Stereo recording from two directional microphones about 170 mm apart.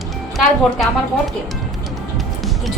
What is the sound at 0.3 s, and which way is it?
Speech, centre (ahead or behind).